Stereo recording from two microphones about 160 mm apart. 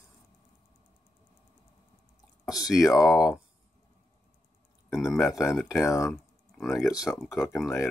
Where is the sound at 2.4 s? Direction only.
25° left (ahead or behind).